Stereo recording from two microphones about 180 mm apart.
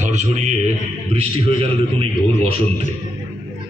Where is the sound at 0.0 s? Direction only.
40° right (ahead or behind).